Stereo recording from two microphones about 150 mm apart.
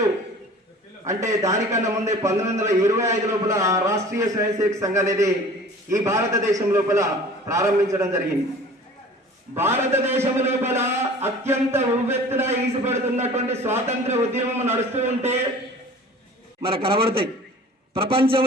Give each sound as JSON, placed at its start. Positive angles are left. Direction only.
{"t": 1.0, "sound": "a man's voice", "side_deg": -20}
{"t": 9.6, "sound": "a man's voice", "side_deg": -15}
{"t": 12.9, "sound": "a man's voice", "side_deg": -45}
{"t": 13.6, "sound": "a man's voice", "side_deg": -15}
{"t": 13.8, "sound": "a man's voice", "side_deg": -50}
{"t": 16.6, "sound": "a man's voice", "side_deg": -40}